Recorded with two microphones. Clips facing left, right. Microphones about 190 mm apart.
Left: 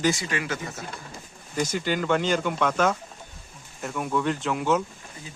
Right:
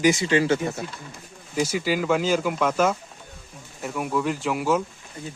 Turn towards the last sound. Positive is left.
turn(degrees=-5)  # may be behind; listen again after turning